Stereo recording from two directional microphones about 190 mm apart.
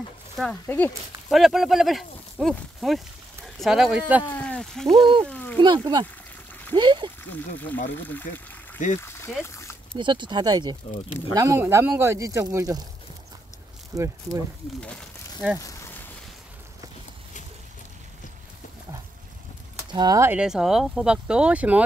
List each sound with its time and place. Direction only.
0.4 s speech: 10° left (ahead or behind)
1.3 s speech: centre (ahead or behind)
4.2 s speech: 10° left (ahead or behind)
5.3 s a sound: 10° left (ahead or behind)
6.7 s speech: 25° right (ahead or behind)
7.2 s speech: 10° left (ahead or behind)
8.8 s speech: 40° left (ahead or behind)
9.4 s a sound: 15° left (ahead or behind)
9.9 s speech: 25° right (ahead or behind)
13.9 s speech: 15° right (ahead or behind)
15.6 s a sound: 15° left (ahead or behind)
19.9 s speech: 20° right (ahead or behind)